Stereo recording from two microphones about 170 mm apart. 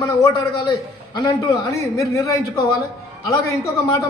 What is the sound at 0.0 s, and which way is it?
A man's voice, 20° left (ahead or behind).